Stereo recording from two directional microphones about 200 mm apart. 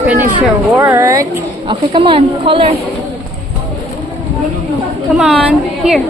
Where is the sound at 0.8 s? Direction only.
15° right (ahead or behind).